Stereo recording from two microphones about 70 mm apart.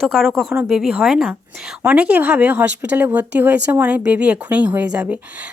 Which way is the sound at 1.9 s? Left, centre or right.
Right.